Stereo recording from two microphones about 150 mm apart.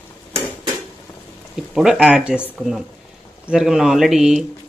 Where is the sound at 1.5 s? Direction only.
5° right (ahead or behind).